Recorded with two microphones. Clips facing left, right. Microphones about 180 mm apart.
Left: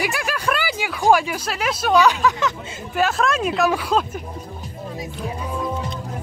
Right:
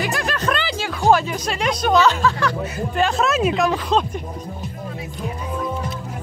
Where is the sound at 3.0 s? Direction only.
Centre (ahead or behind).